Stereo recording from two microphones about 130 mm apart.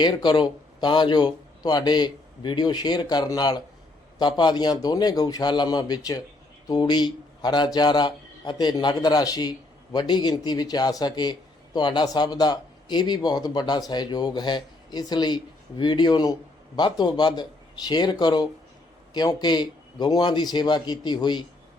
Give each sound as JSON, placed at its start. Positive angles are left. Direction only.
{"t": 0.0, "sound": "speech", "side_deg": 35}